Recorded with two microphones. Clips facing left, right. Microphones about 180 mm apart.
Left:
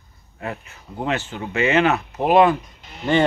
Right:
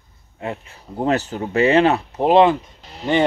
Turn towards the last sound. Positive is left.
turn(degrees=-30)  # may be behind; listen again after turning